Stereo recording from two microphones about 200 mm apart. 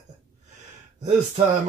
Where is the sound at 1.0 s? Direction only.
35° right (ahead or behind).